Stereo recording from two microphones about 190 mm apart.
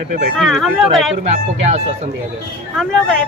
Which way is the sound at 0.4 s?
Centre (ahead or behind).